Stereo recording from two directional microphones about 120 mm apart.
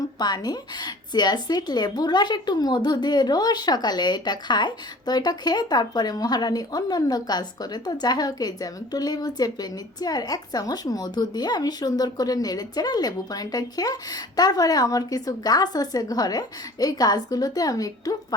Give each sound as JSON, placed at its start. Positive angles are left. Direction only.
{"t": 0.0, "sound": "a woman's voice", "side_deg": 35}